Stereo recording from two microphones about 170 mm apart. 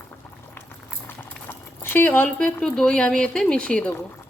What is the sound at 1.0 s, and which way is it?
Speech, 15° left (ahead or behind).